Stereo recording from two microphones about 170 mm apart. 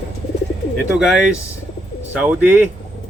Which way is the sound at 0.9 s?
5° right (ahead or behind).